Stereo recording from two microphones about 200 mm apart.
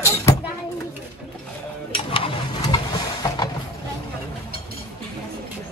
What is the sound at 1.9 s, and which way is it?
Vehicle, 25° left (ahead or behind).